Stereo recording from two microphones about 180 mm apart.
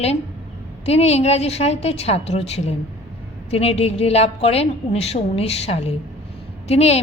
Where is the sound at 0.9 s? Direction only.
35° left (ahead or behind).